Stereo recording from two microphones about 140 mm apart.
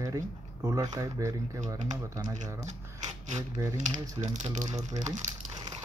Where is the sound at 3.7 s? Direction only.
60° right (ahead or behind).